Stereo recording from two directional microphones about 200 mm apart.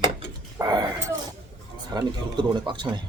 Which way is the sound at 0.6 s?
20° right (ahead or behind).